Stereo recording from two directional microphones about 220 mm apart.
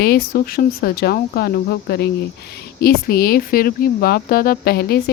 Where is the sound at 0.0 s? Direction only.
45° left (ahead or behind).